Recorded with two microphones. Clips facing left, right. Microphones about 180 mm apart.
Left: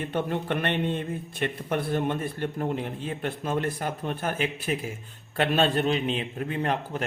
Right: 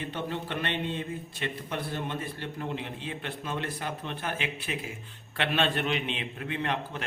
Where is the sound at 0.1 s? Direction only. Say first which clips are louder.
Left 6 dB; 50° left (ahead or behind).